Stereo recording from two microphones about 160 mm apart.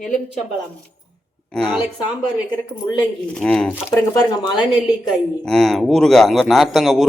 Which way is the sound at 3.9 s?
20° left (ahead or behind).